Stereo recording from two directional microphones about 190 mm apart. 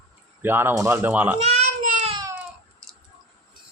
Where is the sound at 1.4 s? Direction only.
35° right (ahead or behind).